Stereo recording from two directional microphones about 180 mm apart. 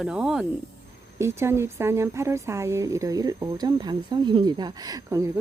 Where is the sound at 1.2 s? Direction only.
15° right (ahead or behind).